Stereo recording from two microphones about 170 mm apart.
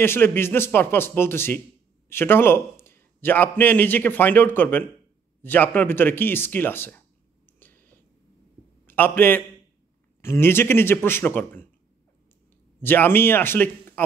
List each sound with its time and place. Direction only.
0.0 s a man's voice: 15° left (ahead or behind)
7.5 s a sound: 10° left (ahead or behind)
8.8 s a man's voice: 10° left (ahead or behind)
12.8 s speech: 10° left (ahead or behind)